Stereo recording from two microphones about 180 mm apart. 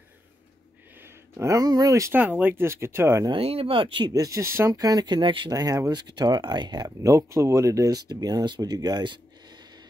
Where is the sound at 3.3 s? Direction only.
30° right (ahead or behind).